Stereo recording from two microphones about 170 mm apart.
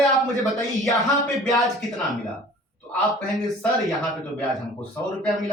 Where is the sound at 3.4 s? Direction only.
Centre (ahead or behind).